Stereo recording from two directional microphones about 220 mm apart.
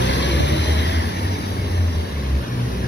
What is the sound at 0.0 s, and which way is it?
Vehicle, 55° left (ahead or behind).